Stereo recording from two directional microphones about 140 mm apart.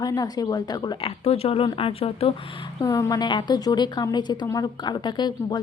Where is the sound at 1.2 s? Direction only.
45° left (ahead or behind).